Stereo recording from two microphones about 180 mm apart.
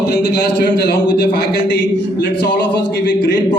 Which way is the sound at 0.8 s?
65° left (ahead or behind).